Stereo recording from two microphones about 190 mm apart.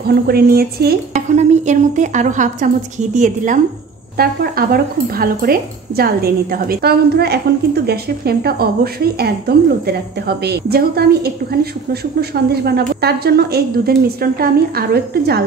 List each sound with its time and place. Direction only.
0.0 s speech: 55° right (ahead or behind)
1.3 s speech: 35° right (ahead or behind)
4.2 s speech: 50° right (ahead or behind)